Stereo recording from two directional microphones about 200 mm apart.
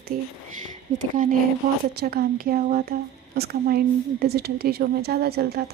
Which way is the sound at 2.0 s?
50° right (ahead or behind).